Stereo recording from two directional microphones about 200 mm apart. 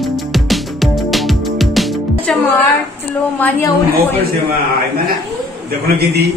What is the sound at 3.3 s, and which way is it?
Speech, 10° left (ahead or behind).